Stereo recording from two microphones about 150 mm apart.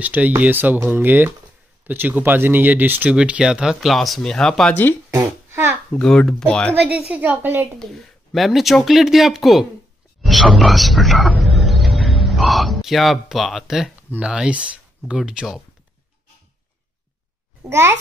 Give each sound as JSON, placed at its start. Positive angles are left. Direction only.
{"t": 0.0, "sound": "speech", "side_deg": -10}
{"t": 5.1, "sound": "a child's voice", "side_deg": -15}
{"t": 5.9, "sound": "speech", "side_deg": 5}
{"t": 6.7, "sound": "speech", "side_deg": -10}
{"t": 7.8, "sound": "speech", "side_deg": 0}
{"t": 17.6, "sound": "speech", "side_deg": -15}